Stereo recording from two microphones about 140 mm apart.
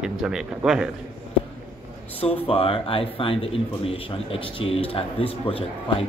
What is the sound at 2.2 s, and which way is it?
Speech, 45° left (ahead or behind).